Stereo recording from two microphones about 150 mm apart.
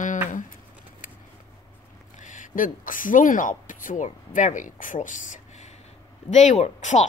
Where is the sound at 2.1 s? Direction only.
55° left (ahead or behind).